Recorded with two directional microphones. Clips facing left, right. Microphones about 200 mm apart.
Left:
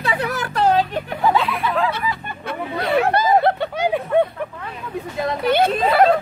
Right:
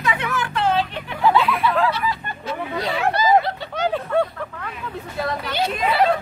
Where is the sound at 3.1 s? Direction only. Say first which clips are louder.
Left 2 dB; 55° left (ahead or behind).